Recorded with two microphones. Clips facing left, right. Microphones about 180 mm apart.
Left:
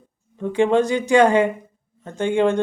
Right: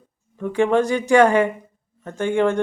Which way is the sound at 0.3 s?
20° left (ahead or behind).